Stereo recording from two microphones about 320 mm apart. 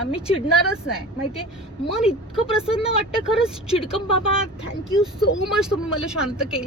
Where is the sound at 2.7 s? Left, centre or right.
Centre.